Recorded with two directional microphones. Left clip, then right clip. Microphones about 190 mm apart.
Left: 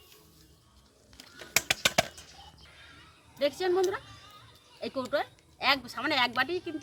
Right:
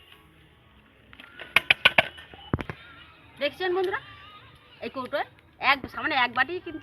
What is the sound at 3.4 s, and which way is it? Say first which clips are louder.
A woman's voice: right 1 dB; 25° left (ahead or behind).